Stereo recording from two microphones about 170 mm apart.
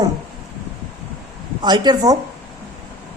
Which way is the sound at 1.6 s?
25° right (ahead or behind).